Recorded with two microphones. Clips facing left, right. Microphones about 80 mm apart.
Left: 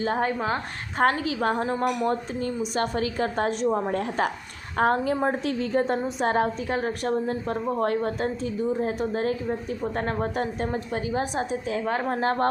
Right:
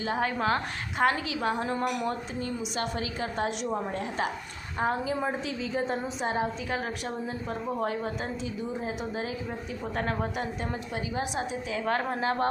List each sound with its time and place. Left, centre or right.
0.0 s a woman's voice: left
0.3 s a woman's voice: centre
0.9 s a woman's voice: left
1.6 s a woman's voice: left
2.0 s a woman's voice: left
9.9 s a woman's voice: left